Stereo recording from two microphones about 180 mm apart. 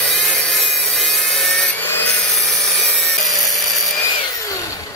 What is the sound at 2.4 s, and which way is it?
Wood, centre (ahead or behind).